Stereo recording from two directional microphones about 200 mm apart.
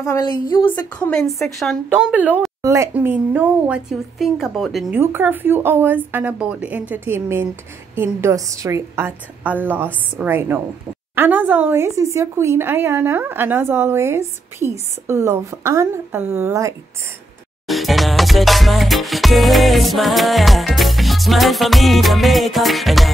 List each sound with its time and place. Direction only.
0.0 s speech: 20° left (ahead or behind)
0.7 s speech: 10° left (ahead or behind); by 16.7 s 15° right (ahead or behind)
17.6 s music: centre (ahead or behind)